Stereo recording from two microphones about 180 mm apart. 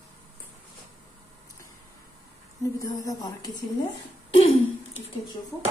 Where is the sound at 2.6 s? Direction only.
20° left (ahead or behind).